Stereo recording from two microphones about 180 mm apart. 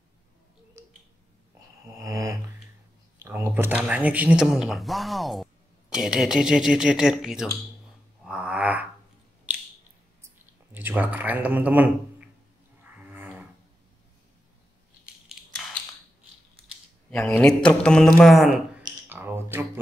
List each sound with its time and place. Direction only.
1.9 s a sound: 20° right (ahead or behind)
3.2 s speech: 15° right (ahead or behind)
8.2 s a sound: 5° right (ahead or behind)
10.7 s speech: 10° right (ahead or behind)
12.8 s livestock: 10° right (ahead or behind)
15.3 s crushing: centre (ahead or behind)
17.1 s speech: 5° left (ahead or behind); by 19.8 s 10° right (ahead or behind)